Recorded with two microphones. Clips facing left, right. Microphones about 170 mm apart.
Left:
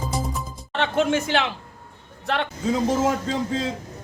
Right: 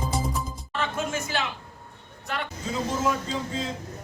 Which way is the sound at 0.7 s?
80° left.